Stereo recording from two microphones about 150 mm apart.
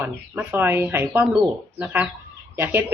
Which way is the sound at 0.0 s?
15° right (ahead or behind).